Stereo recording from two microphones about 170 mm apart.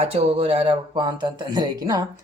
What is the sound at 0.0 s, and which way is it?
A man's voice, 40° right (ahead or behind).